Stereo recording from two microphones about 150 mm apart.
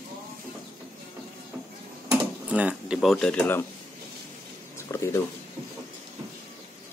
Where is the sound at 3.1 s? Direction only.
10° left (ahead or behind).